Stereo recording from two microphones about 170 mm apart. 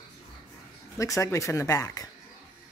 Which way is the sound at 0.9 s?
20° left (ahead or behind).